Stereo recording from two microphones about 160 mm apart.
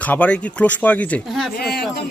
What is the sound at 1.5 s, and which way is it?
Speech, 80° left.